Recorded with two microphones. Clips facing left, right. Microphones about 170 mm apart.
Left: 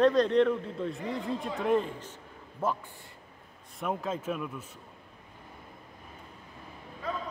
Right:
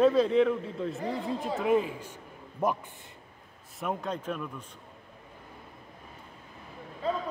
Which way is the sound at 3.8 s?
Centre (ahead or behind).